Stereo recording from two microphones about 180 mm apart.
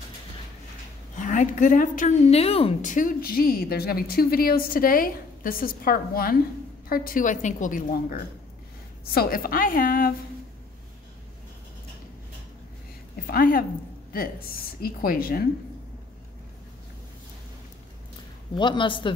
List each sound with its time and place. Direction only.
1.1 s a woman's voice: 45° left (ahead or behind)
13.3 s a woman's voice: 50° left (ahead or behind)
18.6 s speech: 25° left (ahead or behind)